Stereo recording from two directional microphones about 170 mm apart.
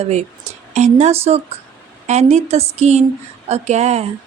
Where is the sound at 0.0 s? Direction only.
40° right (ahead or behind).